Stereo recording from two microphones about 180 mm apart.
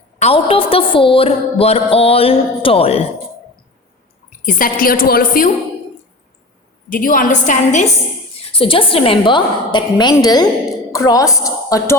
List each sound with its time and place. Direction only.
0.2 s a woman's voice: 30° left (ahead or behind)
4.4 s a woman's voice: 50° left (ahead or behind)
6.9 s a woman's voice: 50° left (ahead or behind)
8.4 s a woman's voice: 30° left (ahead or behind)